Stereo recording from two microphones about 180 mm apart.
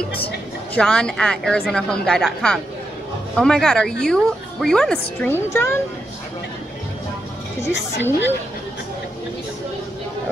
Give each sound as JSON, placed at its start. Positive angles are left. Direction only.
{"t": 0.7, "sound": "a woman's voice", "side_deg": 5}
{"t": 7.7, "sound": "a woman's voice", "side_deg": 80}